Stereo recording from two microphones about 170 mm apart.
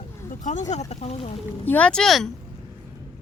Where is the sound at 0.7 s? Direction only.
40° left (ahead or behind).